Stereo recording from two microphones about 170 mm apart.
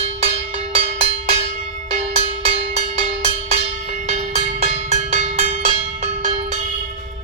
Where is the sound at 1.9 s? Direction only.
35° right (ahead or behind).